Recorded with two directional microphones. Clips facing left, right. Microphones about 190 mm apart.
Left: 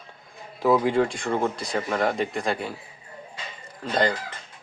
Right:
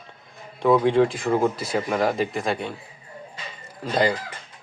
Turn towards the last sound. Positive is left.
turn(degrees=-5)  # may be behind; listen again after turning